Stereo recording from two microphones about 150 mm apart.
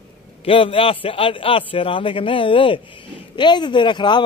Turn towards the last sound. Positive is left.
turn(degrees=30)  # may be behind; listen again after turning